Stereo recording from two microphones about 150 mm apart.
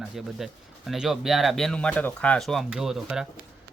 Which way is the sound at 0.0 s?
5° right (ahead or behind).